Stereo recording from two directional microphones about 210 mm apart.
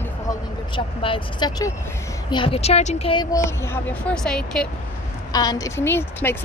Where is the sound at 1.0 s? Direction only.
20° left (ahead or behind); by 4.7 s 5° left (ahead or behind).